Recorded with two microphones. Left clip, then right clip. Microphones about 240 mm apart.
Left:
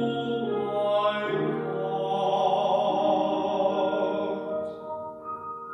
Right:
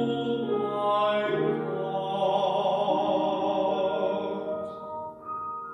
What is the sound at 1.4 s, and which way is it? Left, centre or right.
Music, left.